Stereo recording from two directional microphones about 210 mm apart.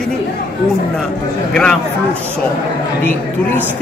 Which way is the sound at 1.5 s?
5° left (ahead or behind).